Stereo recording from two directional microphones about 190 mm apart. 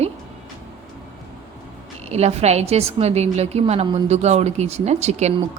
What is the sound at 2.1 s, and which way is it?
A woman's voice, 35° right (ahead or behind).